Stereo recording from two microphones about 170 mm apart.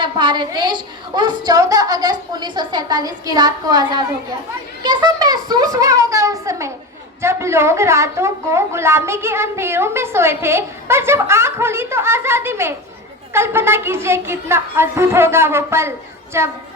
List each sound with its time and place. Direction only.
0.0 s a woman's voice: 25° right (ahead or behind)